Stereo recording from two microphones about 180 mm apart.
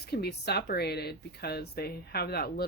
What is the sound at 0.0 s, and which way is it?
Speech, 65° left (ahead or behind).